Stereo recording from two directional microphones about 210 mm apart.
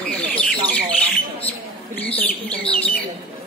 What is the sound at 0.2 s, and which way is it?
Bird, 5° left (ahead or behind).